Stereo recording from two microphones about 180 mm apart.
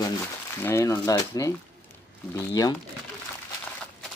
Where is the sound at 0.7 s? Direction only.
15° left (ahead or behind).